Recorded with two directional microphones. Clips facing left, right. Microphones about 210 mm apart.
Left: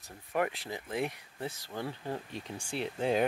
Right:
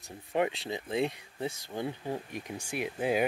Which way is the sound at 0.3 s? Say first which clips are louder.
Right 3 dB; 25° right (ahead or behind).